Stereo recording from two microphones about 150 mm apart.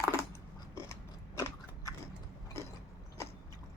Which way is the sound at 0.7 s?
20° left (ahead or behind).